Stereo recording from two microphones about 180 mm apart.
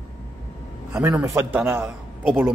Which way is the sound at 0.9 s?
15° right (ahead or behind).